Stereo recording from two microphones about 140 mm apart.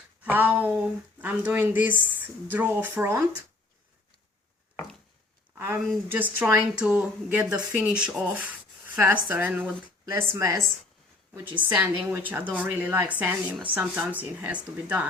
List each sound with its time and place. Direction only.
0.2 s speech: 10° right (ahead or behind)
5.5 s speech: 15° right (ahead or behind)
11.7 s speech: 15° right (ahead or behind)